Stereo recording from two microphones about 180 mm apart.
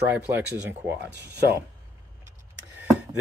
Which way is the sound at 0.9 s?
70° right (ahead or behind).